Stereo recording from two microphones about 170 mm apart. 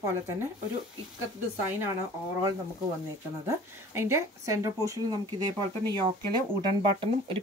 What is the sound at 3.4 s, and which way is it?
Speech, 15° right (ahead or behind).